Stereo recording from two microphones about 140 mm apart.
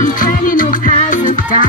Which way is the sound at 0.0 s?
80° left.